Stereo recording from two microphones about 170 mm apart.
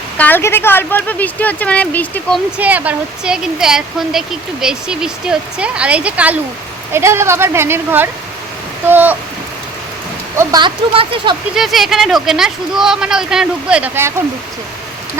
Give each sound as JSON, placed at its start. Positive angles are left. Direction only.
{"t": 0.2, "sound": "a woman's voice", "side_deg": 10}
{"t": 2.6, "sound": "speech", "side_deg": -10}
{"t": 10.3, "sound": "speech", "side_deg": -25}
{"t": 11.5, "sound": "speech", "side_deg": 0}